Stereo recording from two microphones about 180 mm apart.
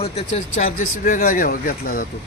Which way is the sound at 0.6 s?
50° left (ahead or behind).